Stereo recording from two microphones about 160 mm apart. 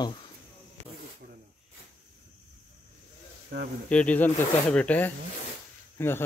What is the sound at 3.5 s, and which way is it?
Speech, 70° right (ahead or behind).